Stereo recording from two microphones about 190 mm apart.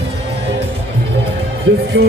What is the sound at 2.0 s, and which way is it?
Music, 60° right (ahead or behind).